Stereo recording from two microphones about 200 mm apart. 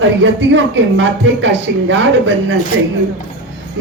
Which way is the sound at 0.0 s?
70° right (ahead or behind).